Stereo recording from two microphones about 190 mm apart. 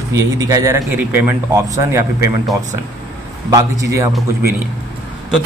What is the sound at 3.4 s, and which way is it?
Speech, 15° right (ahead or behind).